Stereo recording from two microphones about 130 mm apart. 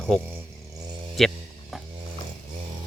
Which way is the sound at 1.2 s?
Centre (ahead or behind).